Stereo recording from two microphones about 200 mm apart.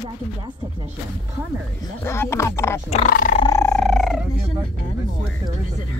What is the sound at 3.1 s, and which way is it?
Speech, 45° left (ahead or behind).